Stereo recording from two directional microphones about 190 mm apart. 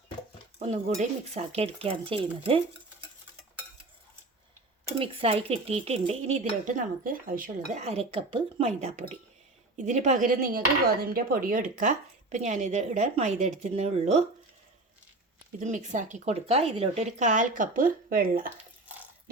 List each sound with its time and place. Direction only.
0.6 s speech: 35° right (ahead or behind)
4.9 s speech: 30° right (ahead or behind)
15.6 s speech: 40° right (ahead or behind)
18.4 s a sound: 10° right (ahead or behind)